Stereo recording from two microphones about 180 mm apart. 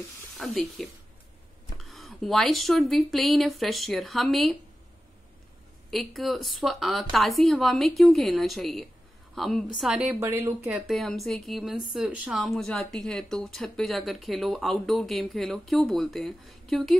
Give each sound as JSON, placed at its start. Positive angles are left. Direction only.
{"t": 0.4, "sound": "a woman's voice", "side_deg": 0}
{"t": 5.9, "sound": "a woman's voice", "side_deg": 0}
{"t": 10.7, "sound": "a woman's voice", "side_deg": 0}